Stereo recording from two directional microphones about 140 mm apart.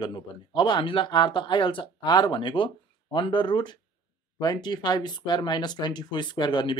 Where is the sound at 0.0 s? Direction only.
35° left (ahead or behind).